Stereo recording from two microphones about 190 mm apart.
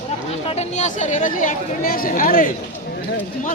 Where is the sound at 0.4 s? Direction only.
35° left (ahead or behind).